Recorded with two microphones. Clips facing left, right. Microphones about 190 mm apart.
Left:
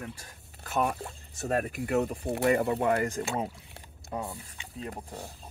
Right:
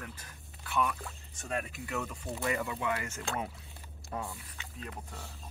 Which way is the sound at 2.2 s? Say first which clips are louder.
Left 7 dB; 60° left (ahead or behind).